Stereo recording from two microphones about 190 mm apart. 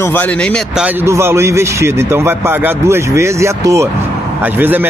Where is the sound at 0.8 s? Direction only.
15° right (ahead or behind).